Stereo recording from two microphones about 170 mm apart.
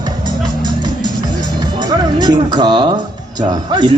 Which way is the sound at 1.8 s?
25° right (ahead or behind).